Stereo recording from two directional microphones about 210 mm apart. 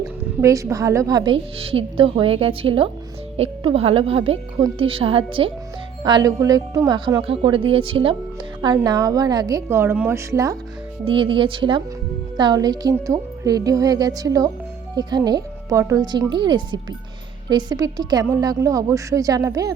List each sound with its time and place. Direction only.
0.0 s a woman's voice: 15° right (ahead or behind)